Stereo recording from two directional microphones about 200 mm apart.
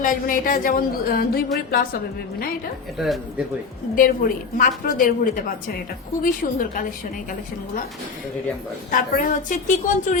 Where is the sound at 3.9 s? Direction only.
40° left (ahead or behind).